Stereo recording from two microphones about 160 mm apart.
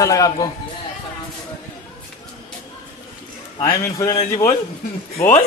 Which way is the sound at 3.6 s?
20° left (ahead or behind).